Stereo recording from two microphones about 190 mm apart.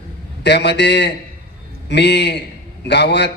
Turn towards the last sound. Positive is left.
turn(degrees=65)  # may be behind; listen again after turning